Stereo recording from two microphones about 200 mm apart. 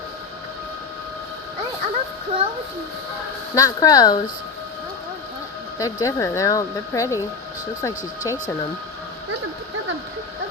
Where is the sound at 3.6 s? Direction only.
20° left (ahead or behind).